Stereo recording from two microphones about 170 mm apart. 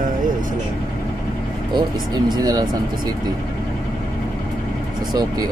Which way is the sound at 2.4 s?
25° right (ahead or behind).